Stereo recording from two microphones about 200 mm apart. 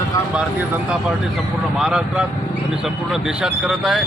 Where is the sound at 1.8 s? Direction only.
5° right (ahead or behind).